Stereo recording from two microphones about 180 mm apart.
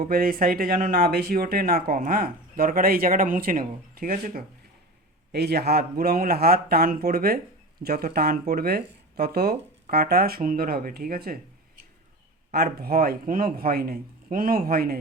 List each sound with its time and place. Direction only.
0.0 s speech: 50° right (ahead or behind)
5.3 s a man's voice: 65° right (ahead or behind)
12.5 s a man's voice: 60° right (ahead or behind)